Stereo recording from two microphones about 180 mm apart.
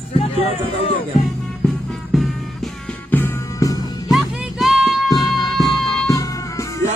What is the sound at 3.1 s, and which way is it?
Music, 15° left (ahead or behind).